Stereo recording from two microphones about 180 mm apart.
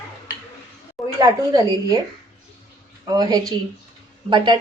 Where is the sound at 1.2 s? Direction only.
20° right (ahead or behind).